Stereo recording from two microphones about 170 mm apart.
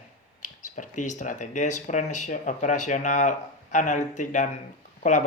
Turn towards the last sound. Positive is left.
turn(degrees=45)  # may be behind; listen again after turning